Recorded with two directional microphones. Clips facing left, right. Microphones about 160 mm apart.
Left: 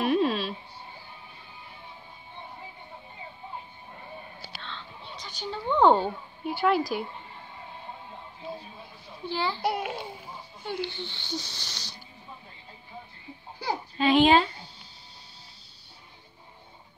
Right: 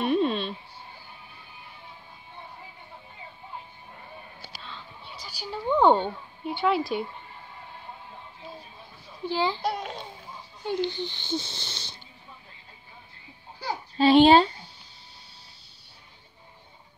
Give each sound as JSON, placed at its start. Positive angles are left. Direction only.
{"t": 0.0, "sound": "a sound", "side_deg": 0}
{"t": 4.6, "sound": "a sound", "side_deg": -10}
{"t": 9.2, "sound": "a child's voice", "side_deg": -15}
{"t": 9.6, "sound": "a child's voice", "side_deg": 10}
{"t": 10.6, "sound": "speech", "side_deg": -15}
{"t": 13.9, "sound": "speech", "side_deg": -35}